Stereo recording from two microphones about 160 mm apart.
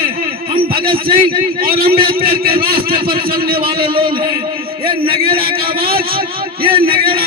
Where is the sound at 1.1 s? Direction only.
65° right (ahead or behind).